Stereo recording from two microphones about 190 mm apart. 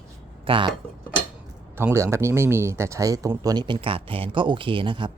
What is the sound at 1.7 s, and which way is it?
Speech, 15° right (ahead or behind).